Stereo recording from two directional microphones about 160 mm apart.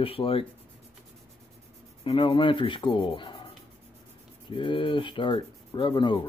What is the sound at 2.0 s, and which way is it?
Speech, 35° left (ahead or behind).